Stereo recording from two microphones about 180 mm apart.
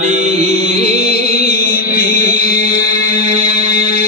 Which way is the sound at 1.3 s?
55° left (ahead or behind).